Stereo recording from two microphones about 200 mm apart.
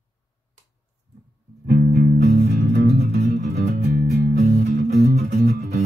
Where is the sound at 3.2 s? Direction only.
35° right (ahead or behind).